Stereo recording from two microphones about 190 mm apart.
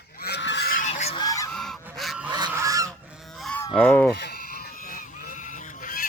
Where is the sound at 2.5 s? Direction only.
15° right (ahead or behind).